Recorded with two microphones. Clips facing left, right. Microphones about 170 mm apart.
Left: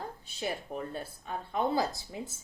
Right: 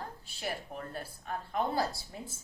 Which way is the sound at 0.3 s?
20° left (ahead or behind).